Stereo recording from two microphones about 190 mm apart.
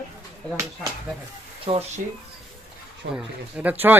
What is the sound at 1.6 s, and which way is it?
Speech, 30° right (ahead or behind).